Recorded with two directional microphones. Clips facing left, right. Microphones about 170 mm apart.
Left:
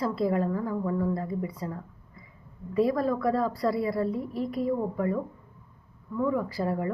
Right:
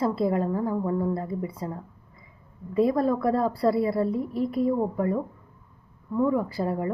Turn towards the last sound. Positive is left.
turn(degrees=-25)  # may be behind; listen again after turning